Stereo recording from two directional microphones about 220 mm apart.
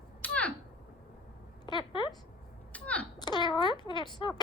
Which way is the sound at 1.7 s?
20° left (ahead or behind).